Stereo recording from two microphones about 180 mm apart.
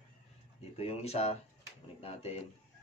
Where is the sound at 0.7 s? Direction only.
35° left (ahead or behind).